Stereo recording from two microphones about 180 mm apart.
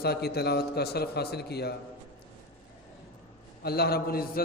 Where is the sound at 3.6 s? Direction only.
60° left (ahead or behind).